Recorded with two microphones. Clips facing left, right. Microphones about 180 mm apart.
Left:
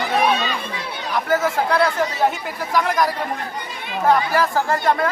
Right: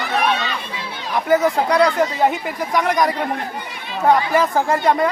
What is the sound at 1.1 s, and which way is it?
Speech, 20° right (ahead or behind).